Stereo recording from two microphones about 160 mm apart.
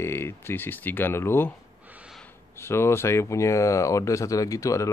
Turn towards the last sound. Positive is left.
turn(degrees=20)  # may be behind; listen again after turning